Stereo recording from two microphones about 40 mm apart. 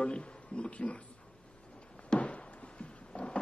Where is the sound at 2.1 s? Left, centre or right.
Left.